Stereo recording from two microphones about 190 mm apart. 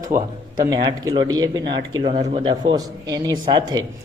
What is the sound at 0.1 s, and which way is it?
A man's voice, 15° right (ahead or behind).